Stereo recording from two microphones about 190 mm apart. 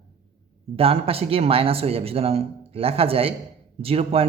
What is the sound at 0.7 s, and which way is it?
Speech, 30° right (ahead or behind).